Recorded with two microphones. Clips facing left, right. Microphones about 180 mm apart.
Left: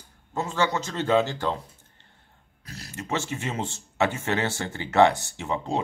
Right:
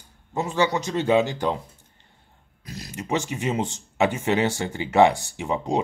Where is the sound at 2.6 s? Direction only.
15° right (ahead or behind).